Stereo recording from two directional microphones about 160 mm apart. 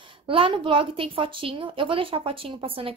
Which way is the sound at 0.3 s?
35° right (ahead or behind).